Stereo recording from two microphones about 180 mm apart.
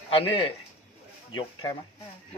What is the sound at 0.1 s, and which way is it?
Speech, 30° left (ahead or behind).